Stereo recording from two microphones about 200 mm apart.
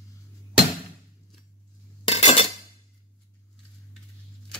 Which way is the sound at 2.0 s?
30° left (ahead or behind).